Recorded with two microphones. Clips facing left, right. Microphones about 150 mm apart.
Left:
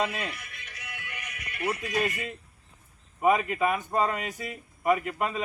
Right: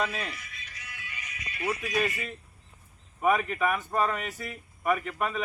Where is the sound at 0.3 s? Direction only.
60° left (ahead or behind).